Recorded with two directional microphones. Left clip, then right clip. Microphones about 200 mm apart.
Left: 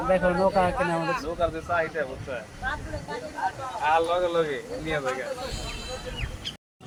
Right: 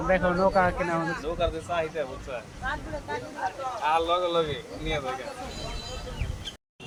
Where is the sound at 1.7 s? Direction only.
35° left (ahead or behind).